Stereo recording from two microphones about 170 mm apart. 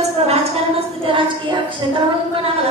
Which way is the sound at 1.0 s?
30° right (ahead or behind).